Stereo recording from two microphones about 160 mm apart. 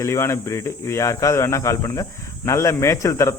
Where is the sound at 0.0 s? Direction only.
15° left (ahead or behind).